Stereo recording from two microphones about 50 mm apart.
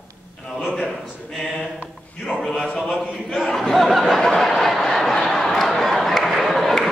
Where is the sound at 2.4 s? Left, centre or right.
Centre.